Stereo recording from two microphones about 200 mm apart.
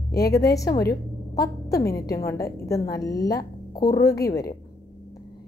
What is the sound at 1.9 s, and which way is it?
A woman's voice, 15° left (ahead or behind).